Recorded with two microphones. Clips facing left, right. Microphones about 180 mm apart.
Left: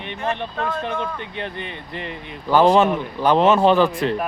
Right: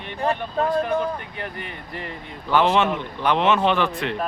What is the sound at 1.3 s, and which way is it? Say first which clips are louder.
Speech: left 3 dB; 25° left (ahead or behind).